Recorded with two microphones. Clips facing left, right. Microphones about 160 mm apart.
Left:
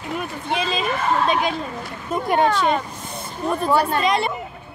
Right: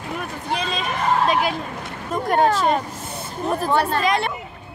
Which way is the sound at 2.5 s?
40° right (ahead or behind).